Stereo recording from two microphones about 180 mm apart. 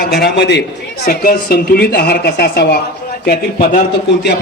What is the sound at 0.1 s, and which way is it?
A man's voice, 65° left (ahead or behind).